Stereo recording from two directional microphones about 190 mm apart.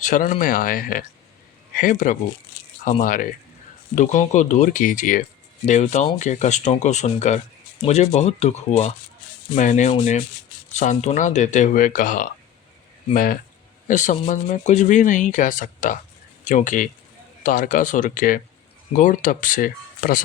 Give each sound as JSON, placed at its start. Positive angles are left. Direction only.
{"t": 0.0, "sound": "speech", "side_deg": 45}
{"t": 13.8, "sound": "speech", "side_deg": 40}